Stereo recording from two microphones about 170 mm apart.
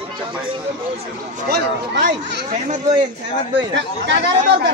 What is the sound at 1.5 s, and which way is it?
Speech, 70° right (ahead or behind).